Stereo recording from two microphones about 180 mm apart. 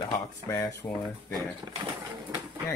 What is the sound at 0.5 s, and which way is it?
Speech, 15° left (ahead or behind).